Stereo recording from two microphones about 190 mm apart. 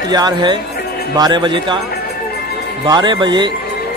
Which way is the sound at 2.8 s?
20° right (ahead or behind).